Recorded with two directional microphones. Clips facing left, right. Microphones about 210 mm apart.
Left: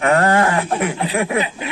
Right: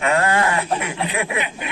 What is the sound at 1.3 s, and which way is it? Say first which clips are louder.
Speech: left 5 dB; 35° left (ahead or behind).